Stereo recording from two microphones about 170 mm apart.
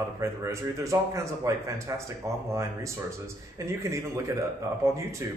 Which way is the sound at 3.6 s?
15° right (ahead or behind).